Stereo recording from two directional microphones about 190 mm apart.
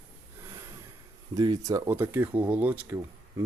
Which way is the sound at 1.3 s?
20° right (ahead or behind).